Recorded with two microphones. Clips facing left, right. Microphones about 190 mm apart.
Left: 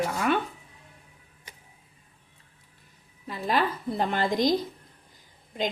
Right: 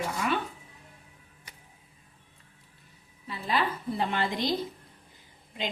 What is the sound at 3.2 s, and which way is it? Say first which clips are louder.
A woman's voice: left 3 dB; 45° left (ahead or behind).